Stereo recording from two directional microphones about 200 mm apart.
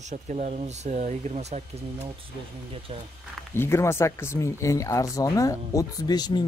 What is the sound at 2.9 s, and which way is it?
Speech, 30° right (ahead or behind).